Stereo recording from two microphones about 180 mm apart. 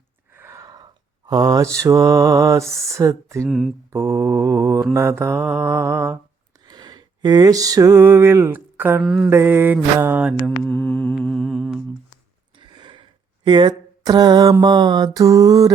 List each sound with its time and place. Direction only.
0.3 s a sound: 15° right (ahead or behind)
1.3 s mantra: 20° right (ahead or behind)
3.4 s music: centre (ahead or behind)
3.9 s mantra: 15° right (ahead or behind)
6.7 s a sound: 25° right (ahead or behind); by 9.3 s 5° right (ahead or behind)
9.3 s mantra: 15° right (ahead or behind)
10.6 s music: 5° left (ahead or behind)
12.5 s speech: 25° right (ahead or behind)